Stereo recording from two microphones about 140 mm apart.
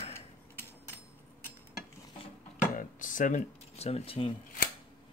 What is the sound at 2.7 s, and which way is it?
Dishes, 70° left (ahead or behind).